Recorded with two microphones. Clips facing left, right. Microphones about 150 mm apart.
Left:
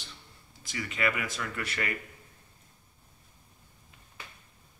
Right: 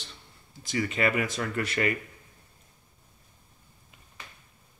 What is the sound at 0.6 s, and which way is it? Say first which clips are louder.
Speech: right 5 dB; 35° right (ahead or behind).